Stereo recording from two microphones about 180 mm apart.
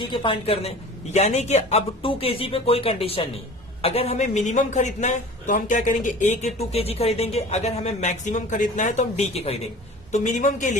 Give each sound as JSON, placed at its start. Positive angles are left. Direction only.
{"t": 0.0, "sound": "a man's voice", "side_deg": 30}